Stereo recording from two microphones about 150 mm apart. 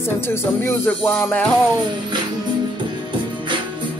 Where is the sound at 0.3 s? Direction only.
15° left (ahead or behind).